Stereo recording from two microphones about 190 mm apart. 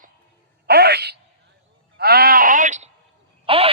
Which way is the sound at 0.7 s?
60° right (ahead or behind).